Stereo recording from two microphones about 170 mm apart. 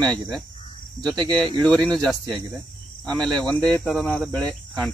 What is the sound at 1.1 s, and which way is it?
Speech, 25° right (ahead or behind).